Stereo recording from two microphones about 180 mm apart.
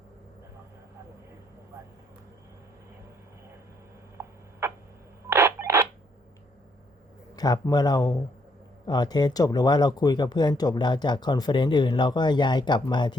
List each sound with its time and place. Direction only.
4.2 s a sound: 15° right (ahead or behind)
5.3 s telephone dialing: 15° right (ahead or behind)
7.3 s speech: 20° left (ahead or behind)